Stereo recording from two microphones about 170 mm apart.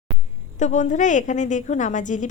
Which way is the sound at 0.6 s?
45° left (ahead or behind).